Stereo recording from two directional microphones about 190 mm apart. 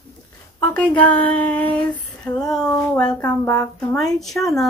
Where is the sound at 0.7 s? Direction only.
5° left (ahead or behind).